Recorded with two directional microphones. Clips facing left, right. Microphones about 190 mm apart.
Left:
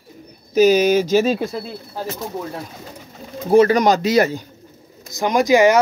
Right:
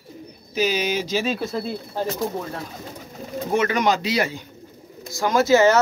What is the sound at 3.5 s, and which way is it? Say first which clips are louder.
Speech: left 8 dB; 35° left (ahead or behind).